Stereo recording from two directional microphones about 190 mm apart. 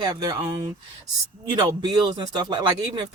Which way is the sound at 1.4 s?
20° right (ahead or behind).